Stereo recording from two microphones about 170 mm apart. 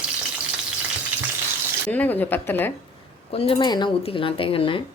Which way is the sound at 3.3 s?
35° left (ahead or behind).